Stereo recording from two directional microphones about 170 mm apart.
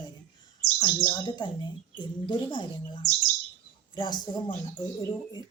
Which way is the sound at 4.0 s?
25° left (ahead or behind).